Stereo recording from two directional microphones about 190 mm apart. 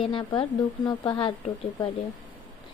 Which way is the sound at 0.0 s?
25° left (ahead or behind).